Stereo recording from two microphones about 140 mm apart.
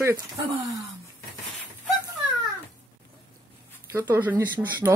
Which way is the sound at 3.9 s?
15° right (ahead or behind).